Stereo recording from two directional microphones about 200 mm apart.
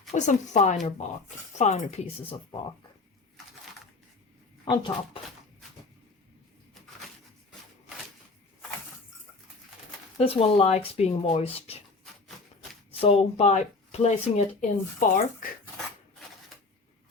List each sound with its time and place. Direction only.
0.1 s speech: 35° left (ahead or behind)
4.6 s speech: 25° left (ahead or behind)
10.2 s speech: 30° left (ahead or behind)
12.9 s speech: 30° left (ahead or behind)